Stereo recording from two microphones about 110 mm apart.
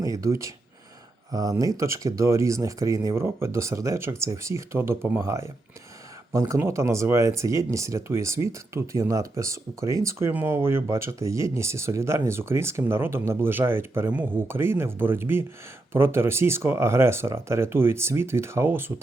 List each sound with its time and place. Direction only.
0.0 s speech: 30° right (ahead or behind)